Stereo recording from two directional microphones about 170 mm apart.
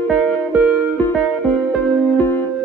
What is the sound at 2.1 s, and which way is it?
Music, 10° left (ahead or behind).